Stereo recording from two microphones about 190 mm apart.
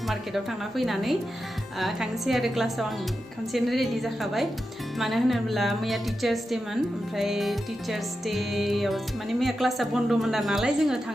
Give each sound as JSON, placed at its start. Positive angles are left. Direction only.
{"t": 0.1, "sound": "music", "side_deg": 0}